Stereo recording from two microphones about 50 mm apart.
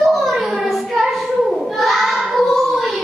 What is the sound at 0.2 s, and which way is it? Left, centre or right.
Child singing, centre.